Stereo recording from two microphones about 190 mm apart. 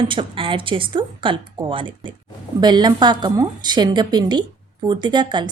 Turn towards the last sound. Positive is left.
turn(degrees=-25)  # may be behind; listen again after turning